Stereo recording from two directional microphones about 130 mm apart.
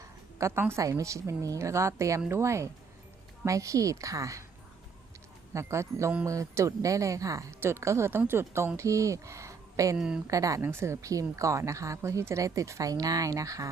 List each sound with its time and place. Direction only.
0.0 s a woman's voice: 20° right (ahead or behind)
5.5 s a woman's voice: 20° right (ahead or behind)